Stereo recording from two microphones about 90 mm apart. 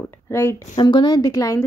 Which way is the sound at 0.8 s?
55° left (ahead or behind).